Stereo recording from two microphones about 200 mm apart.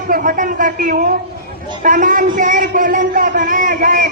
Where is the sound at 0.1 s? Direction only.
45° right (ahead or behind).